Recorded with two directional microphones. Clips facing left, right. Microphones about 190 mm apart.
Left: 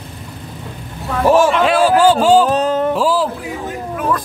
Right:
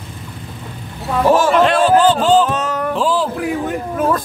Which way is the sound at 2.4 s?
35° left (ahead or behind).